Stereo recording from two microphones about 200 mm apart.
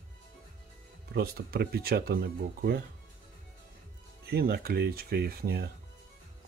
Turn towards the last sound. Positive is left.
turn(degrees=-50)  # may be behind; listen again after turning